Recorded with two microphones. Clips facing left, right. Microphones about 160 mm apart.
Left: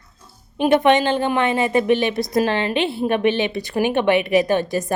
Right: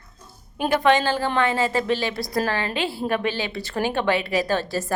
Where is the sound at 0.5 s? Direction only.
20° left (ahead or behind).